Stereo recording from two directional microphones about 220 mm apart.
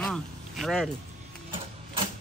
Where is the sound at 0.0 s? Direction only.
Centre (ahead or behind).